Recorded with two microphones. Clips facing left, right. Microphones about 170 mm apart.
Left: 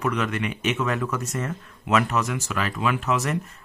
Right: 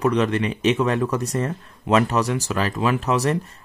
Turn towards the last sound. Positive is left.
turn(degrees=-35)  # may be behind; listen again after turning